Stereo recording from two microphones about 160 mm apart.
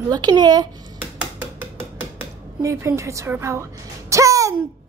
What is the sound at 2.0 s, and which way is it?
Speech, 15° right (ahead or behind).